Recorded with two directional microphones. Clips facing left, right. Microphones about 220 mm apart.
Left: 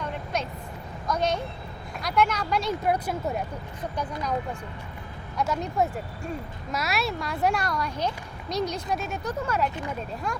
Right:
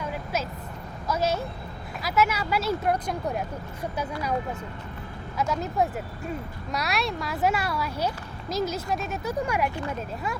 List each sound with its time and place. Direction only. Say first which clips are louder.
0.0 s vehicle: even; 5° right (ahead or behind)
1.0 s speech: even; 5° right (ahead or behind)
5.4 s speech: even; centre (ahead or behind)
9.4 s speech: right 1 dB; 15° right (ahead or behind)
9.6 s speech: right 1 dB; 20° left (ahead or behind)
10.3 s speech: even; 5° right (ahead or behind)